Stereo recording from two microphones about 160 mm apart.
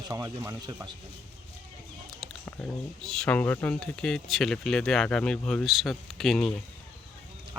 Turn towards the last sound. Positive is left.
turn(degrees=0)  # may be behind; listen again after turning